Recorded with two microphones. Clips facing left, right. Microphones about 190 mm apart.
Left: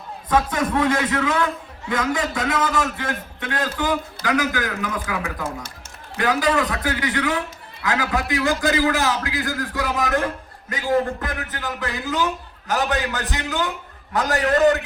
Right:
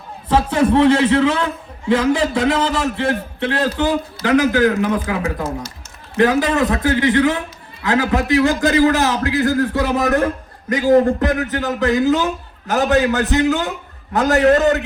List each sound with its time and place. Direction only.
0.3 s a man's voice: 30° right (ahead or behind)
6.7 s speech: 35° right (ahead or behind)
7.8 s a man's voice: 35° right (ahead or behind)